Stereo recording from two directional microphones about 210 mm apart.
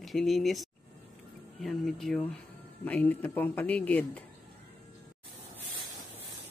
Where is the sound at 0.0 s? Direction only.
Centre (ahead or behind).